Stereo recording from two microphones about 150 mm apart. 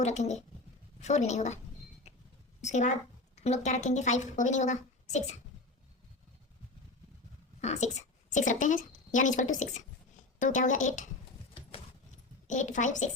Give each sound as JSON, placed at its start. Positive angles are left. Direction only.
{"t": 0.0, "sound": "a woman's voice", "side_deg": 50}
{"t": 2.6, "sound": "a woman's voice", "side_deg": 50}
{"t": 7.6, "sound": "speech", "side_deg": 50}
{"t": 12.5, "sound": "speech", "side_deg": 55}